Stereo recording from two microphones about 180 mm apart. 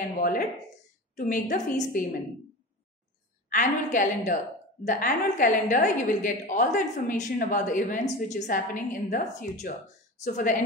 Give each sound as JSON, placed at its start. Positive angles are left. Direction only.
{"t": 0.2, "sound": "a woman's voice", "side_deg": 55}
{"t": 3.4, "sound": "a woman's voice", "side_deg": 45}